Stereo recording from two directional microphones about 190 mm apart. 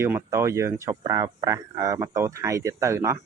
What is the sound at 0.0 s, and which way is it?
Speech, 15° right (ahead or behind).